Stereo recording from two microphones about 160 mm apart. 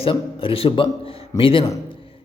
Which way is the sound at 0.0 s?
35° left (ahead or behind).